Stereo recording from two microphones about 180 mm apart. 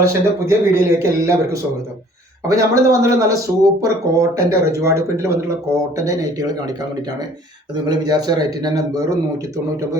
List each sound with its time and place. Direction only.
0.0 s speech: 15° right (ahead or behind)
2.5 s a man's voice: 20° right (ahead or behind)
7.9 s a man's voice: 20° right (ahead or behind)